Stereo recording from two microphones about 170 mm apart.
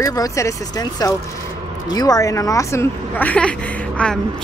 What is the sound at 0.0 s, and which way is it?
A man's voice, 20° left (ahead or behind).